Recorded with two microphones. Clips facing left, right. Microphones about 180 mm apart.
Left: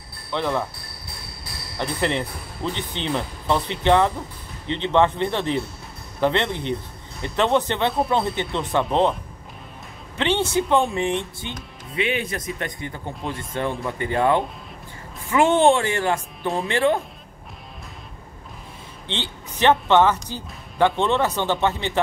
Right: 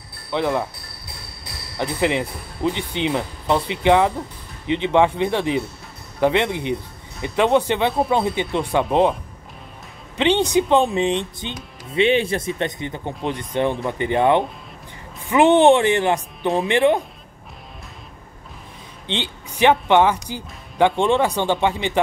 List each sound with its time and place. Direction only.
0.3 s speech: 15° right (ahead or behind)
1.8 s speech: 15° right (ahead or behind)
10.1 s speech: 15° right (ahead or behind)
19.0 s speech: 15° right (ahead or behind)